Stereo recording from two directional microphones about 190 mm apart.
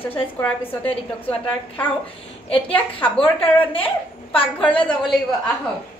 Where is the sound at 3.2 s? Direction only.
30° left (ahead or behind).